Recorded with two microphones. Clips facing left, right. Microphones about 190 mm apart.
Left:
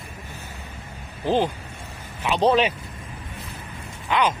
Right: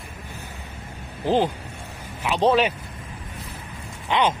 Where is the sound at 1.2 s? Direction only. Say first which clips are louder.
Right 1 dB; 15° right (ahead or behind).